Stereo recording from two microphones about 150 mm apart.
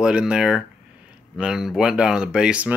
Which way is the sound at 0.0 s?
5° right (ahead or behind).